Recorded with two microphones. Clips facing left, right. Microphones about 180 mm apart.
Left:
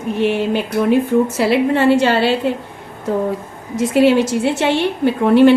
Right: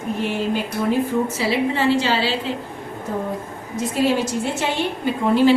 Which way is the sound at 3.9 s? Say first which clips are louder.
Left 7 dB; 70° left (ahead or behind).